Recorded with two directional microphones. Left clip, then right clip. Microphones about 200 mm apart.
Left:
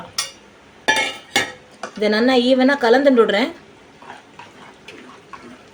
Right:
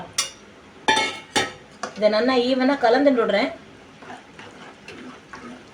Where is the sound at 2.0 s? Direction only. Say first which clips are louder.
Left 2 dB; 55° left (ahead or behind).